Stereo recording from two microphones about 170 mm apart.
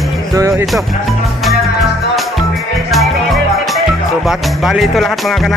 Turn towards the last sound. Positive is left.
turn(degrees=0)  # may be behind; listen again after turning